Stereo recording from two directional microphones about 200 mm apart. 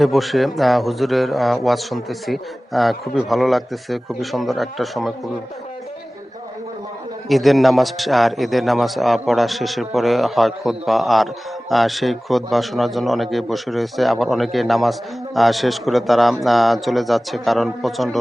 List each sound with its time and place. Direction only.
0.0 s a man's voice: centre (ahead or behind)
7.3 s a man's voice: centre (ahead or behind)